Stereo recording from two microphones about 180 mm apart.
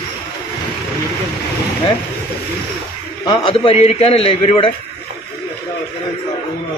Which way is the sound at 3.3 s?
25° left (ahead or behind).